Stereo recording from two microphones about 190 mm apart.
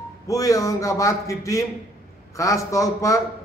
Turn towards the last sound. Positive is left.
turn(degrees=15)  # may be behind; listen again after turning